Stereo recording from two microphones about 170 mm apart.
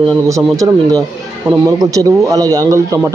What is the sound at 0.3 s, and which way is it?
A man's voice, 20° right (ahead or behind).